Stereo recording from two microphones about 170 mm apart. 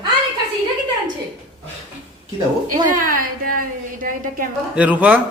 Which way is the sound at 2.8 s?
55° right (ahead or behind).